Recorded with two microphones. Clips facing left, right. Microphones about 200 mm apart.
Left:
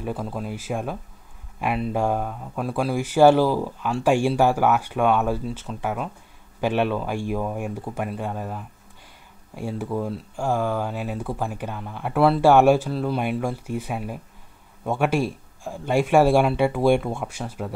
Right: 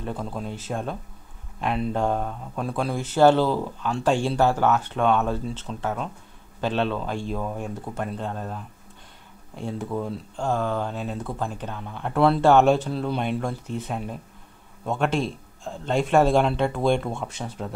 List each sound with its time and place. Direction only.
0.0 s speech: 5° left (ahead or behind)